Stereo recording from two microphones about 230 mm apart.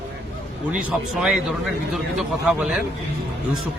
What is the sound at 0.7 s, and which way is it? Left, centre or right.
Speech, centre.